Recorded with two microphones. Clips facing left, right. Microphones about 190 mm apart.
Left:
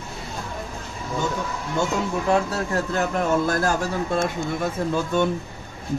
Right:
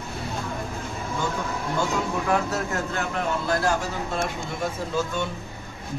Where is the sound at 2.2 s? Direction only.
30° left (ahead or behind).